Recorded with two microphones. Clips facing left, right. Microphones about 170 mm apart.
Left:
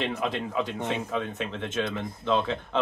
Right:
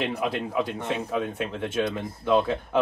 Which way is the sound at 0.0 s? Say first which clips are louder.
Right 2 dB; 10° right (ahead or behind).